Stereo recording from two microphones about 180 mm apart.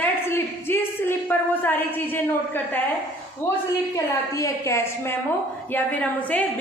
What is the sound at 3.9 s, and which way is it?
A woman's voice, 20° left (ahead or behind).